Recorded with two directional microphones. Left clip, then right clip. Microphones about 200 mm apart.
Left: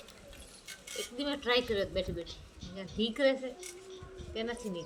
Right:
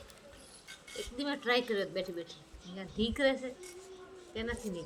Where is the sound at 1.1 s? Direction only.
10° right (ahead or behind).